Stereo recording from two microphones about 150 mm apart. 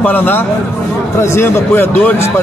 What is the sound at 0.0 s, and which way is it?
Speech, 10° left (ahead or behind).